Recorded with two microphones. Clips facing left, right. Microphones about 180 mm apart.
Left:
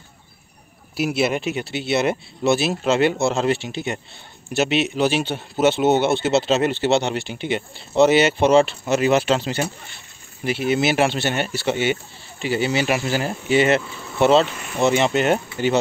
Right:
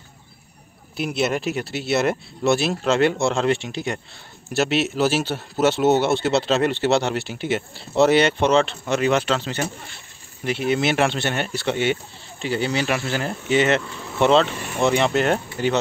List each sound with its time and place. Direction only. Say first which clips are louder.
0.9 s a man's voice: left 2 dB; 5° left (ahead or behind)